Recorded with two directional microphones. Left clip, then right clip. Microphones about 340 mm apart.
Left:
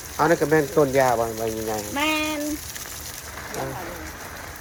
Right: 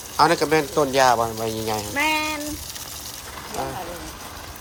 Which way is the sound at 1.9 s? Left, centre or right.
Left.